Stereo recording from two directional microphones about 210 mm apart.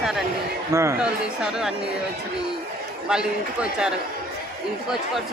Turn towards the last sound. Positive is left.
turn(degrees=-5)  # may be behind; listen again after turning